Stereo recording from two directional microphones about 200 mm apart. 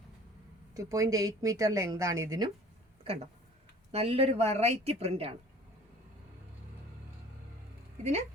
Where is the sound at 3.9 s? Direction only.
30° right (ahead or behind).